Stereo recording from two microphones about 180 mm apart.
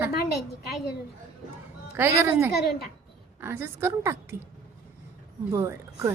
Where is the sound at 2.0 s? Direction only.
15° right (ahead or behind).